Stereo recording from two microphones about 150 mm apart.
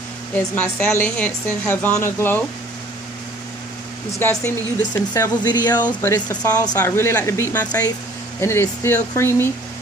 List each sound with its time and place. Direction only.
0.3 s a woman's voice: 10° left (ahead or behind)
4.2 s speech: 15° left (ahead or behind)
6.8 s a woman's voice: 15° left (ahead or behind)